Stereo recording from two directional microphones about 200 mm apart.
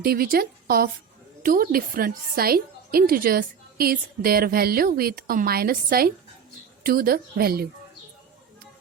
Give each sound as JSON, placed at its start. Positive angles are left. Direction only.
{"t": 0.0, "sound": "a woman's voice", "side_deg": -50}